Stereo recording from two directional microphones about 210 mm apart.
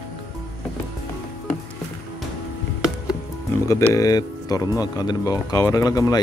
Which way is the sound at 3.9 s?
15° left (ahead or behind).